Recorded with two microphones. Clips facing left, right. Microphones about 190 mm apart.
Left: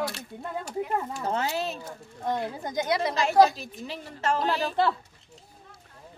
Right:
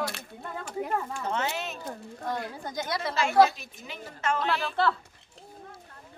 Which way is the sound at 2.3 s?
20° left (ahead or behind).